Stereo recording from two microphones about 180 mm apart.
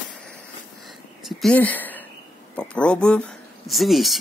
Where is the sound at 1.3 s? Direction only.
5° left (ahead or behind).